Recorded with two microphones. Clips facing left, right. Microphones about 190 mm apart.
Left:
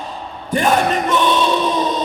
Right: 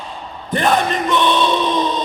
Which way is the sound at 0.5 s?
10° left (ahead or behind).